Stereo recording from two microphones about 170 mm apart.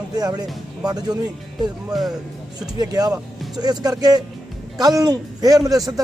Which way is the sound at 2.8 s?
20° right (ahead or behind).